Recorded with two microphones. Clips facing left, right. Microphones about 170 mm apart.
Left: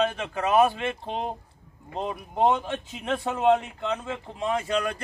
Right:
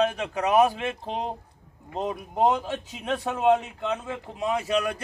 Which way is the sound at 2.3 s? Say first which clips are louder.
Even; 5° right (ahead or behind).